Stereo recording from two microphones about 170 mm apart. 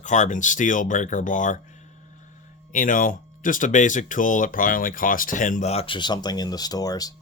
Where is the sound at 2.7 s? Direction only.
50° left (ahead or behind); by 7.1 s 20° left (ahead or behind).